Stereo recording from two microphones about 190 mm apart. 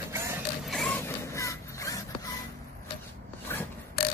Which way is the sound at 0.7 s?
5° left (ahead or behind).